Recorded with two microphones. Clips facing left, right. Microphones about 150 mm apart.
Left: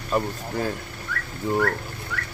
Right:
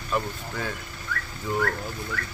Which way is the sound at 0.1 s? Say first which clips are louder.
Left 3 dB; 40° left (ahead or behind).